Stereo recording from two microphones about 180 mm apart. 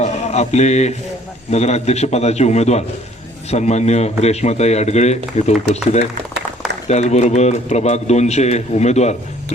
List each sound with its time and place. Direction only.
0.0 s a man's voice: 40° left (ahead or behind)
6.8 s a man's voice: 40° left (ahead or behind)